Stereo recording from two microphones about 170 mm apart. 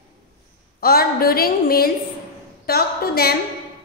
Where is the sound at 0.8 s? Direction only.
60° left (ahead or behind).